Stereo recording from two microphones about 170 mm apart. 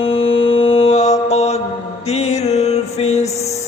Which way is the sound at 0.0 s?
35° left (ahead or behind).